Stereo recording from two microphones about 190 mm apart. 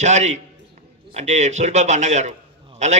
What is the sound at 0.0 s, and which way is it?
A man's voice, 35° right (ahead or behind).